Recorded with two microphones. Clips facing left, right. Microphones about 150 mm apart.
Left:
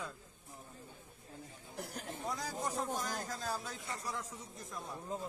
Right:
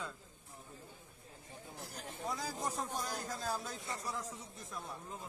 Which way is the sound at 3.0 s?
10° right (ahead or behind).